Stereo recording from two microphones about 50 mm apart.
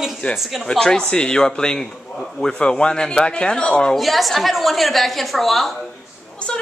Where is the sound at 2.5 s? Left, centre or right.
Centre.